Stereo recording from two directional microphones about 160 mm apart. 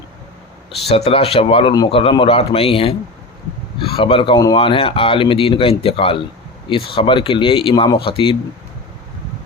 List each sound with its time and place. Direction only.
0.9 s speech: 40° left (ahead or behind)
1.7 s speech: 25° left (ahead or behind)